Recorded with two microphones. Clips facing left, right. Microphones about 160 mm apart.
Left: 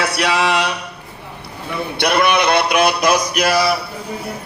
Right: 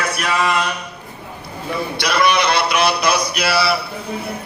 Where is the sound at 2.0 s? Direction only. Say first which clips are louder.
Left 2 dB; 55° left (ahead or behind).